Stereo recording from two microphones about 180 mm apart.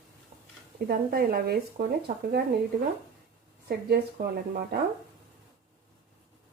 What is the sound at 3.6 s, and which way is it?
Speech, 60° right (ahead or behind).